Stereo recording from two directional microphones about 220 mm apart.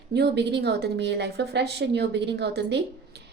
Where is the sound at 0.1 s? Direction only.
50° right (ahead or behind).